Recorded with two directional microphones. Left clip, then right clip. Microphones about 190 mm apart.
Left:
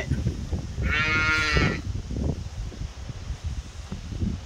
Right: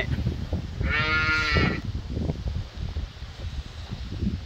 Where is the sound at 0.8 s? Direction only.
90° left.